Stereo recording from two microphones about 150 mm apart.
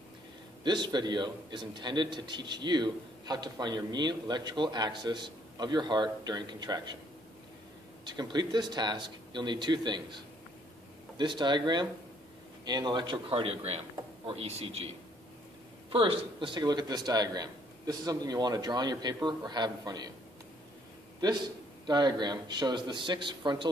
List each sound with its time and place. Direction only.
0.7 s a man's voice: 30° right (ahead or behind)
8.0 s a man's voice: 30° right (ahead or behind)
11.1 s a man's voice: 30° right (ahead or behind)
15.9 s a man's voice: 35° right (ahead or behind)
21.8 s a man's voice: 30° right (ahead or behind)